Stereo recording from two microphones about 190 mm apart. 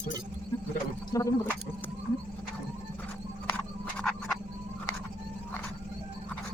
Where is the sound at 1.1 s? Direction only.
15° left (ahead or behind).